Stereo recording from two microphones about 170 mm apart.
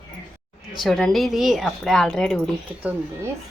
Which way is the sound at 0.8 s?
Centre (ahead or behind).